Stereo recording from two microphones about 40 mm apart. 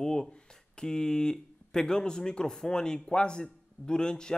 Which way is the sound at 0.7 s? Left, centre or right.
Centre.